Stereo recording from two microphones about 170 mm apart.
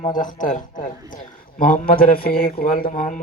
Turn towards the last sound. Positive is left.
turn(degrees=50)  # may be behind; listen again after turning